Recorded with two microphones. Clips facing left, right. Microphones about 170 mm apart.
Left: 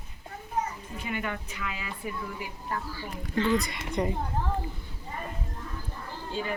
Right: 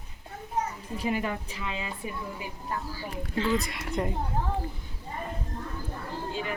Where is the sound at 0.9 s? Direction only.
35° right (ahead or behind).